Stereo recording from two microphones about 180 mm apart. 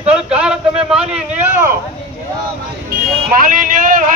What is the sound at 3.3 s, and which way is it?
Speech, 50° right (ahead or behind).